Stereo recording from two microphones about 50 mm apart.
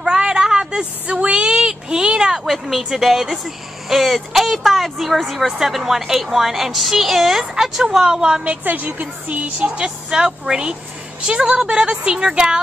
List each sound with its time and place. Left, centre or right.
0.0 s a sound: centre
2.9 s speech: centre
8.5 s a woman's voice: right
9.0 s a woman's voice: right